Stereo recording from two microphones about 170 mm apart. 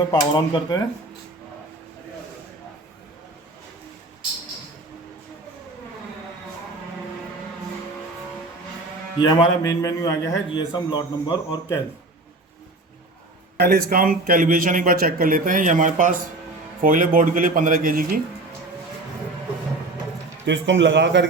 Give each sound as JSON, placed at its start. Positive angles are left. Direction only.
{"t": 0.1, "sound": "a man's voice", "side_deg": 20}
{"t": 9.1, "sound": "a man's voice", "side_deg": 25}
{"t": 13.6, "sound": "a man's voice", "side_deg": -65}
{"t": 20.4, "sound": "a man's voice", "side_deg": -90}